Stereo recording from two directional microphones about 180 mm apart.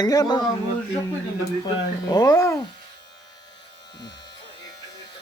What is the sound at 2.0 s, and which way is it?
Speech, 20° left (ahead or behind).